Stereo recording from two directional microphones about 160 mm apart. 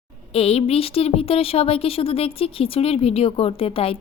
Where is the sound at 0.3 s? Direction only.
40° left (ahead or behind).